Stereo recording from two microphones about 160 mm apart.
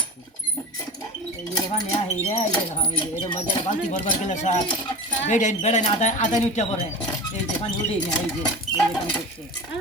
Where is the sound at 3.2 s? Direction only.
30° left (ahead or behind).